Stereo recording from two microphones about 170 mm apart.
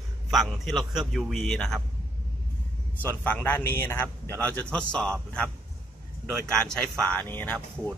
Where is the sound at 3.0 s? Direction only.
10° left (ahead or behind).